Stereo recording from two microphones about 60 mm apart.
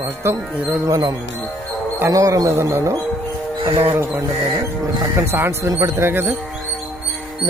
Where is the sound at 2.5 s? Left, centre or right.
Right.